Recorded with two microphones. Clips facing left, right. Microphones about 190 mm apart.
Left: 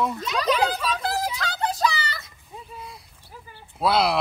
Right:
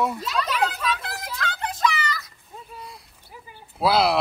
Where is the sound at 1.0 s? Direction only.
35° left (ahead or behind).